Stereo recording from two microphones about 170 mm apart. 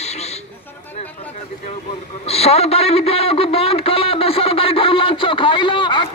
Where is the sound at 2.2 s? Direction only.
35° left (ahead or behind).